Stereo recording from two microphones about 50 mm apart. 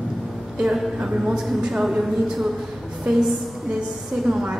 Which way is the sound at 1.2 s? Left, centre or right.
Centre.